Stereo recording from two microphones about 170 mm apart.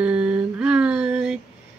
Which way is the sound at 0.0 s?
5° right (ahead or behind).